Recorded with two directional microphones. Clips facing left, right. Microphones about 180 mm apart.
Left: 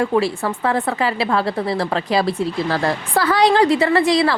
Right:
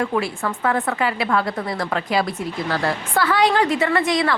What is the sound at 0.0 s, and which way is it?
Speech, 30° left (ahead or behind).